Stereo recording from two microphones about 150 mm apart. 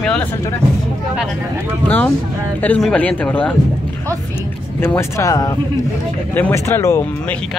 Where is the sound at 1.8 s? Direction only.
10° left (ahead or behind).